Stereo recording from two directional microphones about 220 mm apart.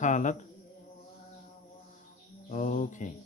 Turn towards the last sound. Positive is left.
turn(degrees=35)  # may be behind; listen again after turning